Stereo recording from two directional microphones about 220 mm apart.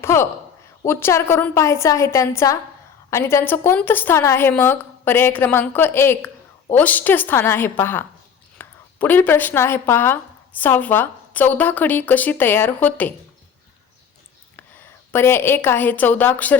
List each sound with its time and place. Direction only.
0.0 s a woman's voice: 10° left (ahead or behind)
14.5 s a woman's voice: 10° left (ahead or behind)